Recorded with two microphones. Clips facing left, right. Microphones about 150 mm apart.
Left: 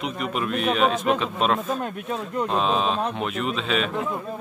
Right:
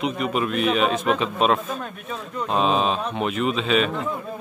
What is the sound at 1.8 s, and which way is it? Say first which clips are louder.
Speech: left 4 dB; 15° left (ahead or behind).